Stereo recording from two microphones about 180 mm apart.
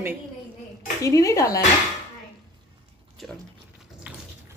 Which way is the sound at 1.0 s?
20° left (ahead or behind).